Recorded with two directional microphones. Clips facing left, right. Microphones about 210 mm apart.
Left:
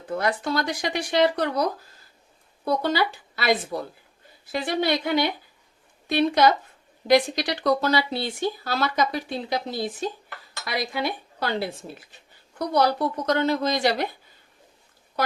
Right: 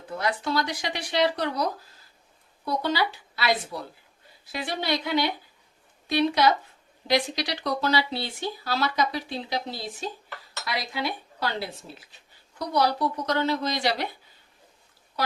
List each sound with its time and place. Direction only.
0.2 s speech: 50° left (ahead or behind)
2.8 s speech: 50° left (ahead or behind)
12.5 s speech: 50° left (ahead or behind)